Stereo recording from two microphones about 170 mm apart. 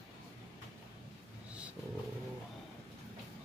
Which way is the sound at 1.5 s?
5° right (ahead or behind).